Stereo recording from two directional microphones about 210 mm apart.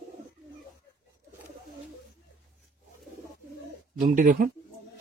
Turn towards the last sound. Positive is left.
turn(degrees=-40)  # may be behind; listen again after turning